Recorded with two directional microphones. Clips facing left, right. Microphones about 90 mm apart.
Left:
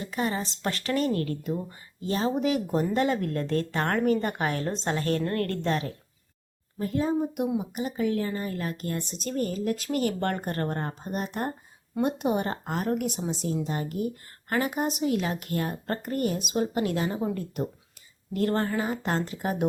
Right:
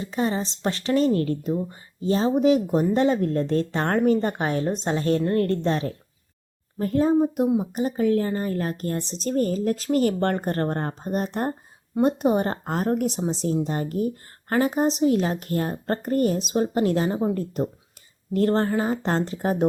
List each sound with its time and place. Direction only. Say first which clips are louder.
0.0 s speech: right 4 dB; 25° right (ahead or behind)
6.7 s a woman's voice: right 6 dB; 45° right (ahead or behind)